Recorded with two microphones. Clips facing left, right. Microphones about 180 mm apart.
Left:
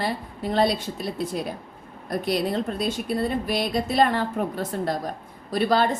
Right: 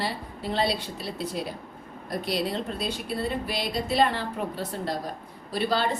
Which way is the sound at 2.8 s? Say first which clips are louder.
Left 5 dB; 50° left (ahead or behind).